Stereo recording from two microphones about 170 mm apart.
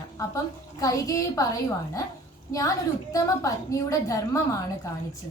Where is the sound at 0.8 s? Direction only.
20° left (ahead or behind).